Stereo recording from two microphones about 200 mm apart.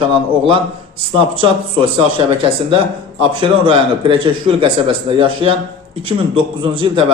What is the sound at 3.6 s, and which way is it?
A man's voice, 25° right (ahead or behind).